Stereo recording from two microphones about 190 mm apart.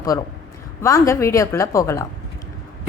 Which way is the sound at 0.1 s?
15° left (ahead or behind).